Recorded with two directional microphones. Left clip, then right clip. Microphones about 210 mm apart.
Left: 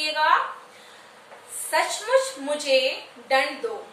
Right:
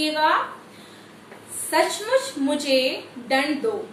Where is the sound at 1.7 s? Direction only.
Centre (ahead or behind).